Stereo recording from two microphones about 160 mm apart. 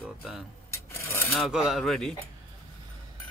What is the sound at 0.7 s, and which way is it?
Rub, 15° left (ahead or behind).